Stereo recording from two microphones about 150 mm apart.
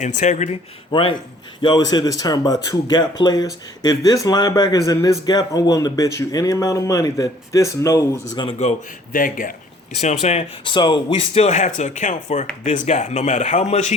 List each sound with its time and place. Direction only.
0.0 s speech: 50° left (ahead or behind)
0.9 s speech: 35° left (ahead or behind)
8.4 s speech: 30° left (ahead or behind)
9.1 s a man's voice: 65° left (ahead or behind)
10.0 s speech: 45° left (ahead or behind)